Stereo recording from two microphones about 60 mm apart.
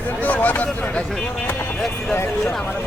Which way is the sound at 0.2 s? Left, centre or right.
Left.